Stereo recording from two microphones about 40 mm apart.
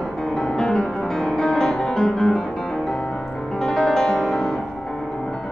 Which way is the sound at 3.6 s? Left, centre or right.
Centre.